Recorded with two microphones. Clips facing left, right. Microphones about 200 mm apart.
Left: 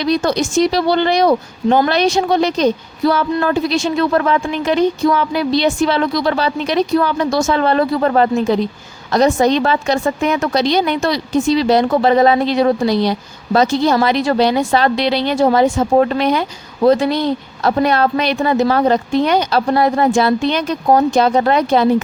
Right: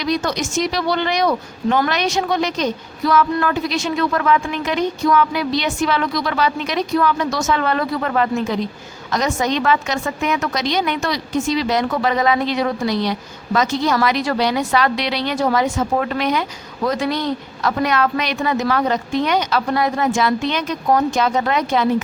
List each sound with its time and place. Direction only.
0.0 s speech: 30° left (ahead or behind)